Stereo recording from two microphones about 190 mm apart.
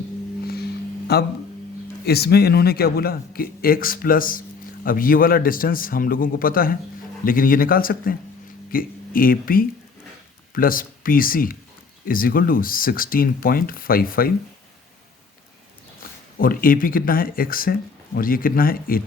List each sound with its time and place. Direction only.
0.4 s music: 55° left (ahead or behind)
2.0 s speech: 55° left (ahead or behind)
16.4 s speech: 50° left (ahead or behind)